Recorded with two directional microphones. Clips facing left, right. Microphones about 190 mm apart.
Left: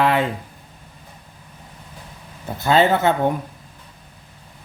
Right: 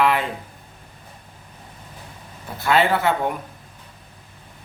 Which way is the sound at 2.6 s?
25° left (ahead or behind).